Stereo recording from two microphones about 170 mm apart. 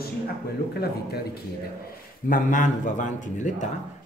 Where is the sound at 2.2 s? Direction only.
50° left (ahead or behind).